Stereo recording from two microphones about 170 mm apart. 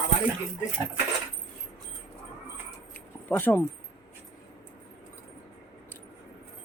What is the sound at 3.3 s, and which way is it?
Speech, 10° left (ahead or behind).